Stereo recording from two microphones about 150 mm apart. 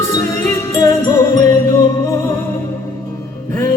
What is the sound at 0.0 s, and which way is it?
Music, 20° left (ahead or behind).